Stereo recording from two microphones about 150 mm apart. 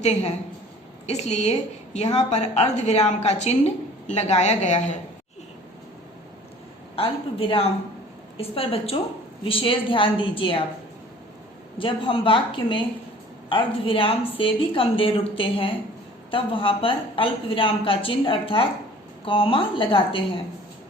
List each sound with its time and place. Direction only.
0.0 s a woman's voice: 45° left (ahead or behind)
6.9 s a woman's voice: 40° left (ahead or behind)
11.8 s a woman's voice: 35° left (ahead or behind)